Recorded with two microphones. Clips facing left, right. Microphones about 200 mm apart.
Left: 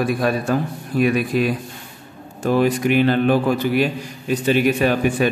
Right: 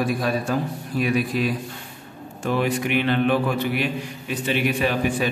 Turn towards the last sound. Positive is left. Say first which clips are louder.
# left 5 dB
turn(degrees=45)  # may be behind; listen again after turning